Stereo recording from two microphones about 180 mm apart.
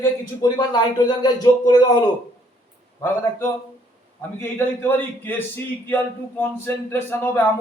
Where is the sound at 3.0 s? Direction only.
10° left (ahead or behind).